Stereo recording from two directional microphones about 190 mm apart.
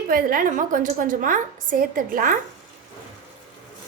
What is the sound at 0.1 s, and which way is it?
A woman's voice, 50° right (ahead or behind).